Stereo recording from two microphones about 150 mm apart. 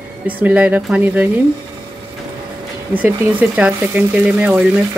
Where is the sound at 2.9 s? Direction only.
10° right (ahead or behind).